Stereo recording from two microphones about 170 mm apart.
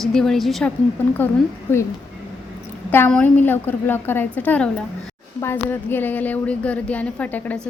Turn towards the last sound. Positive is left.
turn(degrees=10)  # may be behind; listen again after turning